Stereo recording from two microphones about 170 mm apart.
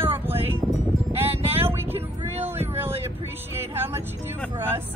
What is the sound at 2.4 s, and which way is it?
Boat, 15° right (ahead or behind).